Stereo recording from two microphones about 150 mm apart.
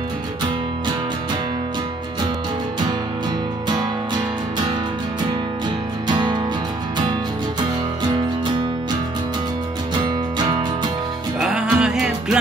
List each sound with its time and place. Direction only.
3.6 s music: 30° right (ahead or behind)
6.0 s music: 30° right (ahead or behind)
11.3 s music: 5° right (ahead or behind)